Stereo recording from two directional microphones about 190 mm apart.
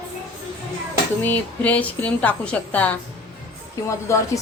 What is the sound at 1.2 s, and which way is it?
A woman's voice, 10° left (ahead or behind).